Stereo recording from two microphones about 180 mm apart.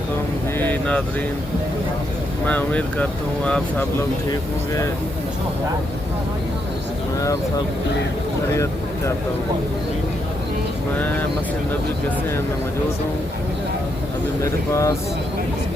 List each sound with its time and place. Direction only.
0.6 s vehicle: 10° left (ahead or behind)
2.5 s speech: 10° left (ahead or behind)
4.3 s speech: 15° left (ahead or behind)
10.9 s speech: 10° left (ahead or behind)
14.4 s speech: 15° left (ahead or behind)